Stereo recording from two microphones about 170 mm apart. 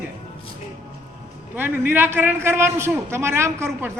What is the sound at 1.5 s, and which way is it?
A man's voice, 10° right (ahead or behind).